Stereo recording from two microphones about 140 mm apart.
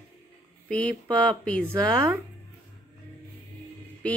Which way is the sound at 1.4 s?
5° left (ahead or behind).